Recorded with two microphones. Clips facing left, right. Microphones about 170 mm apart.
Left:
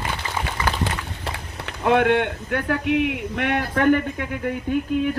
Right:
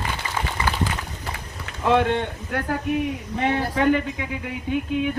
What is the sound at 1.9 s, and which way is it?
A man's voice, 60° left (ahead or behind).